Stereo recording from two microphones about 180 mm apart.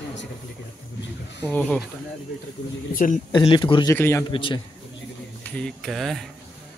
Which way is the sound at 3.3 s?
25° left (ahead or behind).